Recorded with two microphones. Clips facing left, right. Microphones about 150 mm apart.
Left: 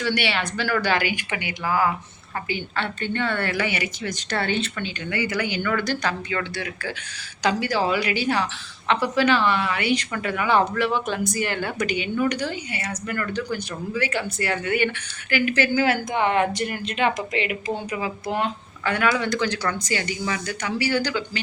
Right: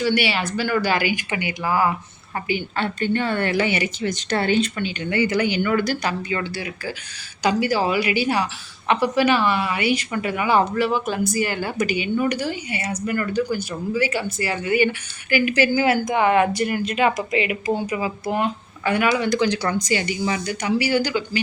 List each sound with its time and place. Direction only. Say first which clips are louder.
0.0 s a woman's voice: right 3 dB; 5° right (ahead or behind)
5.1 s a woman's voice: right 6 dB; 25° right (ahead or behind)